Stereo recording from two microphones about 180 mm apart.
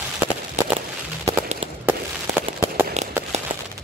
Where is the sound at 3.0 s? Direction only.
40° right (ahead or behind).